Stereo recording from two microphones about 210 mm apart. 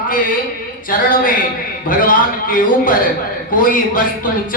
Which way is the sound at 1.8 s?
40° left (ahead or behind).